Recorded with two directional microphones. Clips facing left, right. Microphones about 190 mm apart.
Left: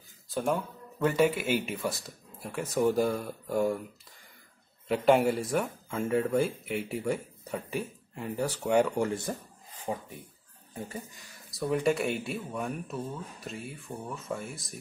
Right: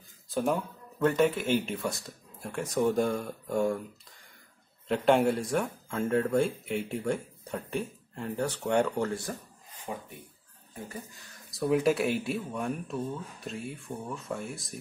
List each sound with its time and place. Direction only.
0.3 s speech: centre (ahead or behind)
4.8 s speech: 5° left (ahead or behind)
9.9 s speech: 30° left (ahead or behind)
11.5 s speech: centre (ahead or behind)